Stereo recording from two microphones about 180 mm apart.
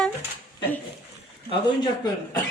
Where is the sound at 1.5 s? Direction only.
25° left (ahead or behind).